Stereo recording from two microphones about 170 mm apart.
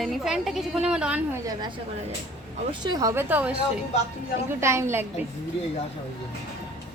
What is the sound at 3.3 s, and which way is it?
Speech, 10° right (ahead or behind).